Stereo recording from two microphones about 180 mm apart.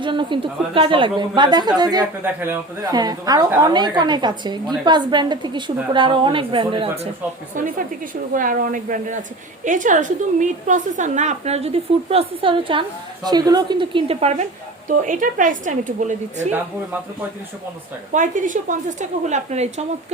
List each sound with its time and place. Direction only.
0.0 s a woman's voice: 25° right (ahead or behind)
8.3 s a woman's voice: 50° right (ahead or behind)
18.1 s a woman's voice: 45° right (ahead or behind)